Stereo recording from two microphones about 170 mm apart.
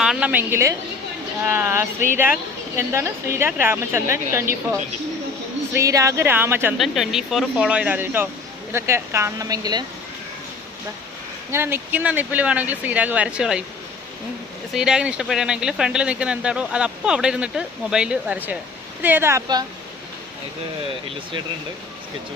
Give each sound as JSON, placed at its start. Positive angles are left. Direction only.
{"t": 0.0, "sound": "speech", "side_deg": -5}
{"t": 5.7, "sound": "speech", "side_deg": -20}
{"t": 6.7, "sound": "a woman's voice", "side_deg": 0}
{"t": 11.5, "sound": "speech", "side_deg": -15}
{"t": 14.7, "sound": "speech", "side_deg": -5}